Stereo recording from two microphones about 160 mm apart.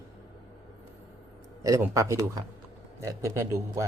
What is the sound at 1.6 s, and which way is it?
Speech, 20° right (ahead or behind).